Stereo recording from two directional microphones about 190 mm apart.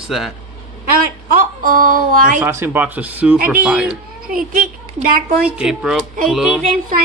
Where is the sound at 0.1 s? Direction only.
Centre (ahead or behind).